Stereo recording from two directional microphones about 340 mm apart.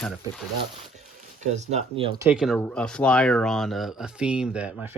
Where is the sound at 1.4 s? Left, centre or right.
Centre.